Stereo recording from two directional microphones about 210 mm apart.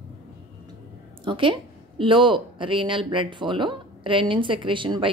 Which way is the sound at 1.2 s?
25° right (ahead or behind).